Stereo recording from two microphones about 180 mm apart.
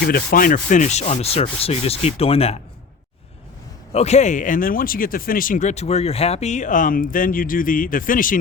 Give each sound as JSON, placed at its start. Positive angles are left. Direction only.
{"t": 0.1, "sound": "sanding", "side_deg": 55}
{"t": 3.9, "sound": "speech", "side_deg": 40}